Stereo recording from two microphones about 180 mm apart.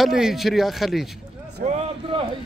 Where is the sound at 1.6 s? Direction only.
35° right (ahead or behind).